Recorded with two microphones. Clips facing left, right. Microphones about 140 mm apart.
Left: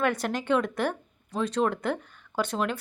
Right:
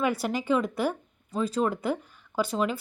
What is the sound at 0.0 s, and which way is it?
A woman's voice, 5° right (ahead or behind).